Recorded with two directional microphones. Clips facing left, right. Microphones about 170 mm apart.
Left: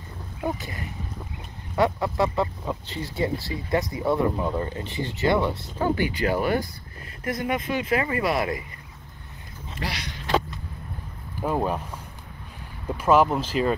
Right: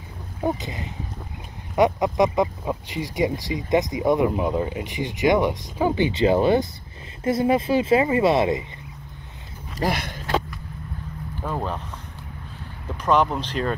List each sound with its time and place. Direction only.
0.6 s speech: 20° right (ahead or behind)
9.8 s speech: 50° right (ahead or behind)
11.4 s speech: 10° left (ahead or behind)
12.9 s speech: 5° left (ahead or behind)